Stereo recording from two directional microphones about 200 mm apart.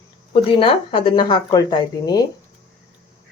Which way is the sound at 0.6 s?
25° left (ahead or behind).